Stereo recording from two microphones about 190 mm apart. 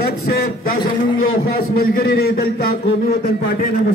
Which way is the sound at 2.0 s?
55° left (ahead or behind).